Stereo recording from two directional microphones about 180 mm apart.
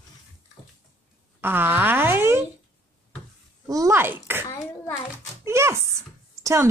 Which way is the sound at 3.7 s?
20° right (ahead or behind).